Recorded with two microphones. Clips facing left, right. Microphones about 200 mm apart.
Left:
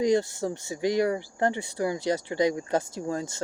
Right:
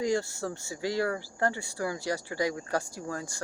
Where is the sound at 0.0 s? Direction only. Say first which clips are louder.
Left 5 dB; 20° left (ahead or behind).